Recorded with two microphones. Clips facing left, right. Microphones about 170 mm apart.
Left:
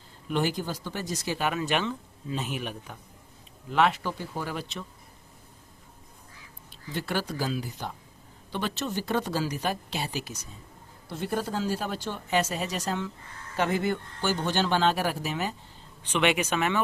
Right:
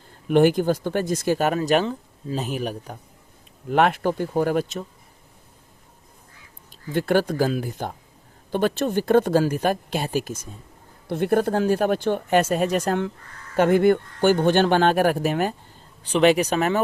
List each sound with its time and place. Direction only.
0.3 s speech: 55° right (ahead or behind); by 3.0 s 40° right (ahead or behind)
3.7 s speech: 55° right (ahead or behind)
6.9 s speech: 50° right (ahead or behind)
16.0 s speech: 35° right (ahead or behind)